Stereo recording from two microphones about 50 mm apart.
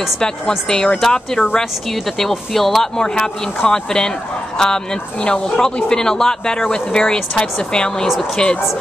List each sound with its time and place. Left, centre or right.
0.2 s speech: centre